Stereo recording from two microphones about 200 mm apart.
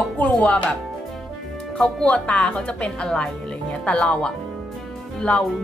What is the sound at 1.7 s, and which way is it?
A woman's voice, 5° left (ahead or behind).